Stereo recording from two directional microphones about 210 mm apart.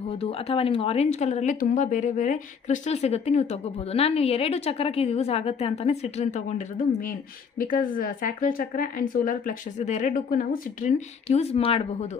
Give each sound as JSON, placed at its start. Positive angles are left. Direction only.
{"t": 0.2, "sound": "a woman's voice", "side_deg": 25}
{"t": 7.1, "sound": "a woman's voice", "side_deg": 40}